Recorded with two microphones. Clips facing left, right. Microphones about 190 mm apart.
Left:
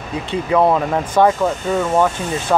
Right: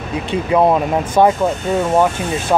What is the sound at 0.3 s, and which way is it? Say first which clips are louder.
Speech: right 1 dB; 15° right (ahead or behind).